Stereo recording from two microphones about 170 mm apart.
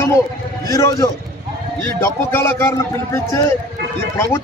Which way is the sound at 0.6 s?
20° left (ahead or behind).